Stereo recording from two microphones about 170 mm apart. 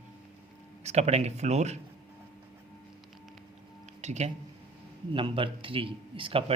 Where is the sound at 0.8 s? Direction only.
40° right (ahead or behind).